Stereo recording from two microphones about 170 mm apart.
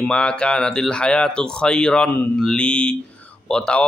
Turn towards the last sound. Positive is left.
turn(degrees=5)  # may be behind; listen again after turning